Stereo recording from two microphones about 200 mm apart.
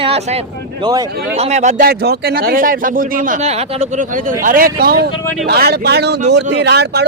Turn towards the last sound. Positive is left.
turn(degrees=-55)  # may be behind; listen again after turning